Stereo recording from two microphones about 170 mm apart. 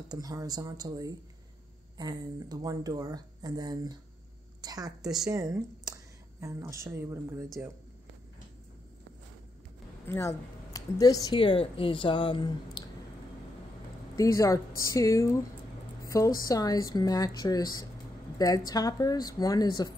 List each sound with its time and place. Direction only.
0.1 s speech: 20° right (ahead or behind)
10.0 s speech: 15° left (ahead or behind)
14.1 s speech: 20° left (ahead or behind)
16.3 s speech: 20° left (ahead or behind)